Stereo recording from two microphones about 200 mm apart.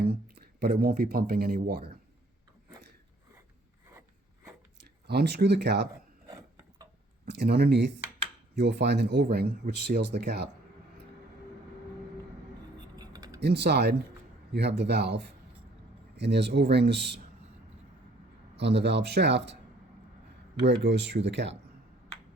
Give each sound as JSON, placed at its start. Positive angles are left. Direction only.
{"t": 0.6, "sound": "speech", "side_deg": -50}
{"t": 5.0, "sound": "speech", "side_deg": -55}
{"t": 7.3, "sound": "speech", "side_deg": -55}
{"t": 13.0, "sound": "typing", "side_deg": -20}
{"t": 13.4, "sound": "speech", "side_deg": -55}
{"t": 18.5, "sound": "speech", "side_deg": -60}
{"t": 20.7, "sound": "speech", "side_deg": -60}